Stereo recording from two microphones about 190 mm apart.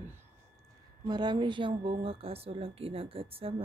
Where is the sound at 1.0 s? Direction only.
20° right (ahead or behind).